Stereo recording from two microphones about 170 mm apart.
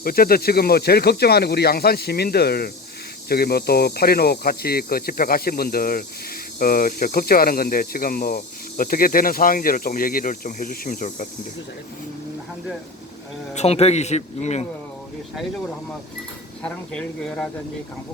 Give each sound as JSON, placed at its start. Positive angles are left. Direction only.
{"t": 0.0, "sound": "speech", "side_deg": 60}
{"t": 13.5, "sound": "a man's voice", "side_deg": 40}
{"t": 16.6, "sound": "speech", "side_deg": 5}